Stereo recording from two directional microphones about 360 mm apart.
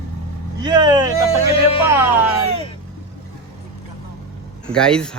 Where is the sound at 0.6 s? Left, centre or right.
Centre.